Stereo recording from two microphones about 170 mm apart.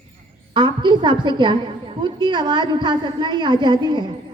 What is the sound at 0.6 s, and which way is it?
A woman's voice, 25° right (ahead or behind).